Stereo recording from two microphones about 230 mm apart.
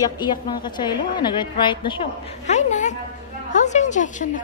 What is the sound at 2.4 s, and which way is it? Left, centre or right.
A woman's voice, left.